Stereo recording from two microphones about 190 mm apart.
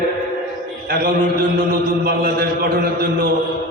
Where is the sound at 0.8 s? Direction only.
50° right (ahead or behind).